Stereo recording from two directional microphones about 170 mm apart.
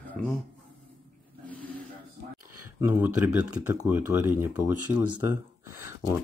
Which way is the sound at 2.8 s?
10° right (ahead or behind).